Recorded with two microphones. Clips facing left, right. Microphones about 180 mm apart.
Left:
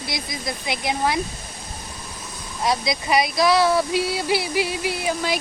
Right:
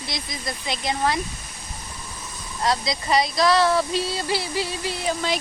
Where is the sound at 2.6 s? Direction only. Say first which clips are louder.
Left 1 dB; 10° left (ahead or behind).